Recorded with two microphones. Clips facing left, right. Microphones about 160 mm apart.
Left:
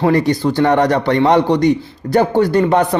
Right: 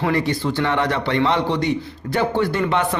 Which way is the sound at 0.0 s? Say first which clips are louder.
Left 7 dB; 40° left (ahead or behind).